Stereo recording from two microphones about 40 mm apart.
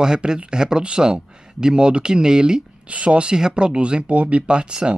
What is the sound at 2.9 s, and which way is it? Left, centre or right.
Speech, right.